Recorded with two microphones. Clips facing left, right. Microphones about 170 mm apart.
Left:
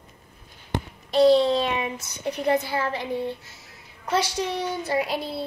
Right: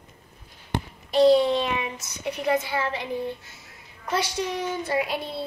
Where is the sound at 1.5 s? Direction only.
35° left (ahead or behind).